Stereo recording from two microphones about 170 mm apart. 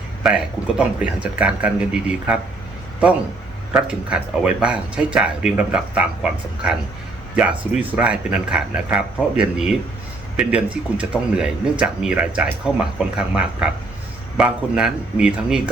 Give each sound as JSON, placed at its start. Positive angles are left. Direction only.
{"t": 0.2, "sound": "speech", "side_deg": 0}
{"t": 3.7, "sound": "speech", "side_deg": -5}
{"t": 7.3, "sound": "speech", "side_deg": -10}